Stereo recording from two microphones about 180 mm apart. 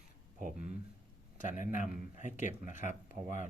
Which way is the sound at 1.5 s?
45° left (ahead or behind).